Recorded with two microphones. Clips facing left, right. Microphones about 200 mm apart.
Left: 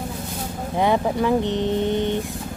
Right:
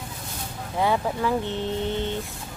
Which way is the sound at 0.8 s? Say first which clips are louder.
Left 4 dB; 20° left (ahead or behind).